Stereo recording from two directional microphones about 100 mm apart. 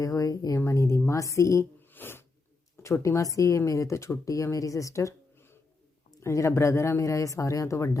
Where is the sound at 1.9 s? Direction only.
20° left (ahead or behind).